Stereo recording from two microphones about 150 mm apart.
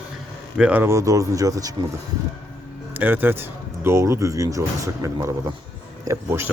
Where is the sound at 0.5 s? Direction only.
10° right (ahead or behind).